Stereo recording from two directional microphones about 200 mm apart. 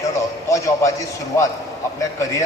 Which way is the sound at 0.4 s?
15° left (ahead or behind).